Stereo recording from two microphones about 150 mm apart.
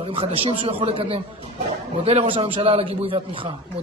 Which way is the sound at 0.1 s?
35° right (ahead or behind).